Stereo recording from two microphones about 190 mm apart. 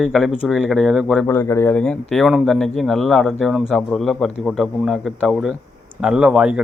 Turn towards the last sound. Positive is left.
turn(degrees=-5)  # may be behind; listen again after turning